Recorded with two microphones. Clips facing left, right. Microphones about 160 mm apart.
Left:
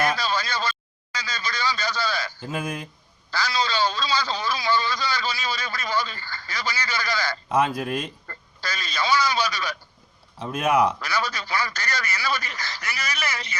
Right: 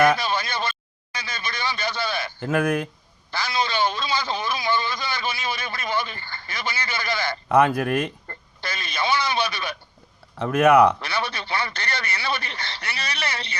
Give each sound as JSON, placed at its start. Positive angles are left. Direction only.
{"t": 0.2, "sound": "a sound", "side_deg": -25}
{"t": 2.4, "sound": "speech", "side_deg": -70}
{"t": 3.3, "sound": "a man's voice", "side_deg": -25}
{"t": 7.4, "sound": "speech", "side_deg": -60}
{"t": 8.3, "sound": "a man's voice", "side_deg": -25}
{"t": 10.3, "sound": "speech", "side_deg": -65}
{"t": 11.0, "sound": "a man's voice", "side_deg": -30}